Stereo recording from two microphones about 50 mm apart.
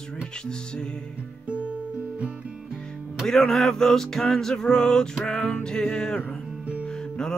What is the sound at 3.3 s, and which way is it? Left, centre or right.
Music, centre.